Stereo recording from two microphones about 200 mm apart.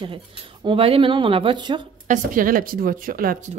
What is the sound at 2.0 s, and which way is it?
Speech, 45° right (ahead or behind).